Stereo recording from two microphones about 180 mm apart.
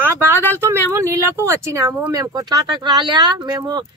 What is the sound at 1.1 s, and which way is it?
Speech, 15° right (ahead or behind).